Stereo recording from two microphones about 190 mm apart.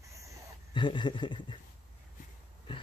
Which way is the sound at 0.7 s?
25° left (ahead or behind).